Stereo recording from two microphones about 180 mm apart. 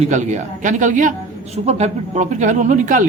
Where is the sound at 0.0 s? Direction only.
40° right (ahead or behind).